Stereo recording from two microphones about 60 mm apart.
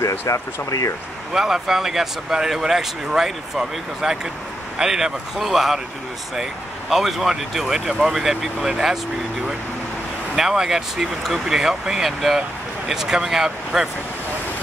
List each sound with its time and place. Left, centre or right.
0.3 s speech: left
1.3 s speech: centre
10.3 s speech: centre